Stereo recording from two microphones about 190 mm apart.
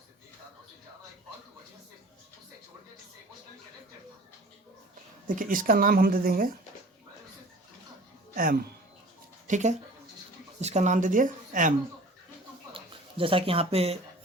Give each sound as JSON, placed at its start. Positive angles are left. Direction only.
{"t": 5.3, "sound": "speech", "side_deg": -45}
{"t": 9.5, "sound": "speech", "side_deg": -40}
{"t": 12.7, "sound": "speech", "side_deg": -30}